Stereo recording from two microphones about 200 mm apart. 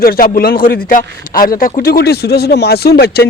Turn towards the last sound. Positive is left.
turn(degrees=50)  # may be behind; listen again after turning